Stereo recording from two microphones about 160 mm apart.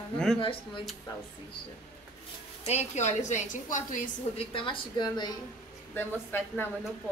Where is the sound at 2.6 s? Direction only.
45° left (ahead or behind).